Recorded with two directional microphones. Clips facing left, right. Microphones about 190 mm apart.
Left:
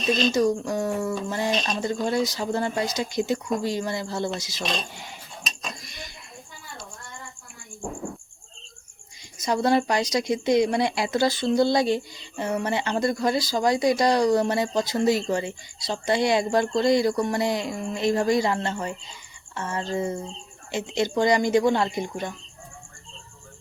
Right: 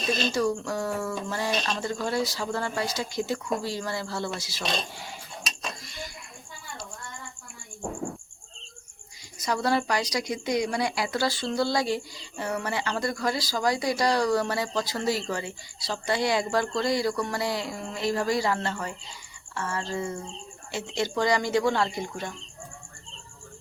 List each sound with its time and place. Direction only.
0.3 s speech: 20° left (ahead or behind)
5.8 s a sound: 15° left (ahead or behind)
9.4 s speech: 20° left (ahead or behind)